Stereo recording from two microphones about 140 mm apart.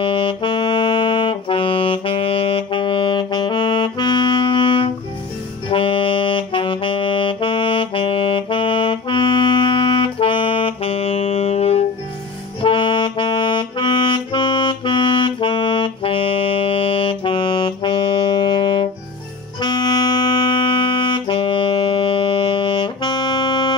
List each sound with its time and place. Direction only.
0.0 s saxophone: 35° left (ahead or behind)
12.6 s saxophone: 35° left (ahead or behind)
19.6 s music: 30° left (ahead or behind)